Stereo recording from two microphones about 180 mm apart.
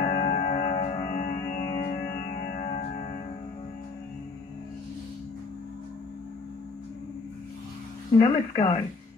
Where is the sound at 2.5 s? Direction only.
35° left (ahead or behind).